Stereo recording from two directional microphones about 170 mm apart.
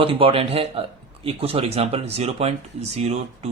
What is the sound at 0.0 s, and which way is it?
A man's voice, 30° right (ahead or behind).